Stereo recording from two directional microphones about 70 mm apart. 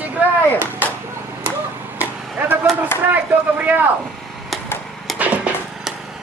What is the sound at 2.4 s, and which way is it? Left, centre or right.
Speech, right.